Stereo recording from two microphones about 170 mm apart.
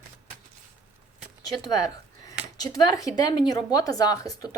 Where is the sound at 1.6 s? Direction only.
25° left (ahead or behind).